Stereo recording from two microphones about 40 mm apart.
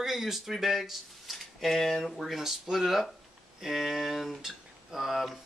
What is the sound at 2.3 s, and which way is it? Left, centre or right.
Speech, centre.